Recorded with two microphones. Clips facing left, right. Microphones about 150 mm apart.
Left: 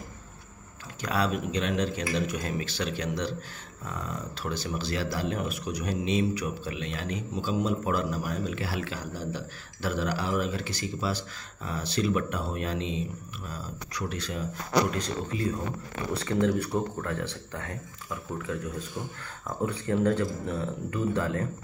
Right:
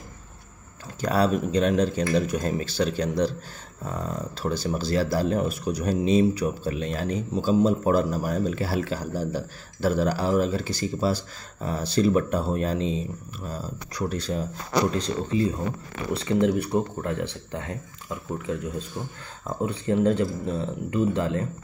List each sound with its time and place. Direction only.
1.0 s speech: 35° right (ahead or behind)
4.4 s speech: 40° right (ahead or behind); by 21.5 s 20° right (ahead or behind)